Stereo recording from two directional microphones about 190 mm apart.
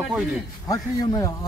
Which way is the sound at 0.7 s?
20° left (ahead or behind).